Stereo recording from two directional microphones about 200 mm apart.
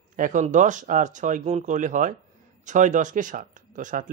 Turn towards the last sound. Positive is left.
turn(degrees=-40)  # may be behind; listen again after turning